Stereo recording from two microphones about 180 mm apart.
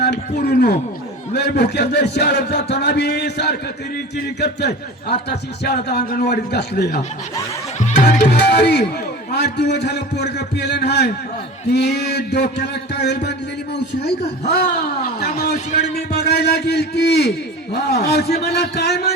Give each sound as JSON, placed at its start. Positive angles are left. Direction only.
{"t": 0.0, "sound": "a man's voice", "side_deg": 65}
{"t": 8.0, "sound": "music", "side_deg": 70}
{"t": 9.3, "sound": "a man's voice", "side_deg": 70}